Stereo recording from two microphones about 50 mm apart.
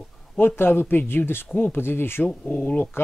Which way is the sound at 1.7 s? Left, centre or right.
Left.